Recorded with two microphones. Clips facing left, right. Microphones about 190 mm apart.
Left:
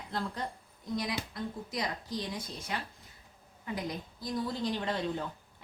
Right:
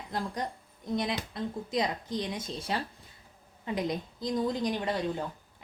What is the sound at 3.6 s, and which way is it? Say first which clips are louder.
A woman's voice: right 5 dB; 20° right (ahead or behind).